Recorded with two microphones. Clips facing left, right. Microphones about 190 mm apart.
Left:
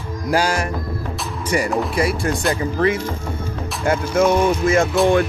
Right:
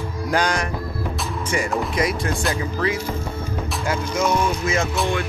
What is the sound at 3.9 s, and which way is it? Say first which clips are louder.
Speech: left 6 dB; 50° left (ahead or behind).